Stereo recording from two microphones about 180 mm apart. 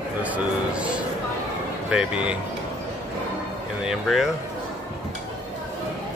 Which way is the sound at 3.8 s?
Centre (ahead or behind).